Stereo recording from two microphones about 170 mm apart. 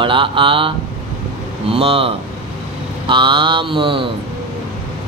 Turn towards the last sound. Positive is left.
turn(degrees=-30)  # may be behind; listen again after turning